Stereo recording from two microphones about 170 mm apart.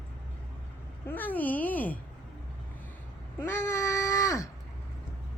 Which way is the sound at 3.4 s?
15° left (ahead or behind).